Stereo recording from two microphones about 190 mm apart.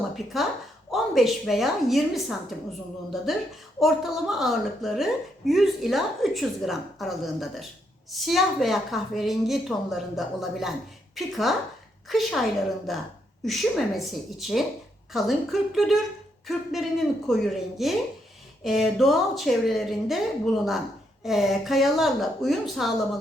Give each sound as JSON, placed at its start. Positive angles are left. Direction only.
{"t": 0.3, "sound": "a woman's voice", "side_deg": 0}